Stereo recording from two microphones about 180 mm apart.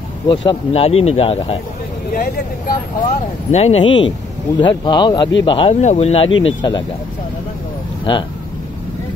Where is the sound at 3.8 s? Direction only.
90° left.